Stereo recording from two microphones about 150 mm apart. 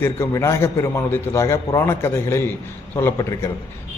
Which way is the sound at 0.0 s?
20° left (ahead or behind).